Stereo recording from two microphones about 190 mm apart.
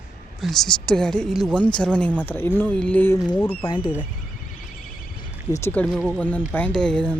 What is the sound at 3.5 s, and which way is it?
Speech, 25° left (ahead or behind).